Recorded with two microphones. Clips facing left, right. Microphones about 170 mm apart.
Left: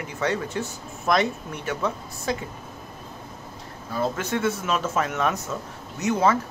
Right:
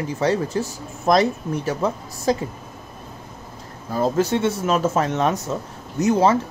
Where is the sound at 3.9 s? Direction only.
35° right (ahead or behind).